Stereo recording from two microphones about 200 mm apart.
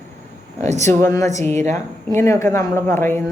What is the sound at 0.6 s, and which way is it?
Speech, 35° right (ahead or behind).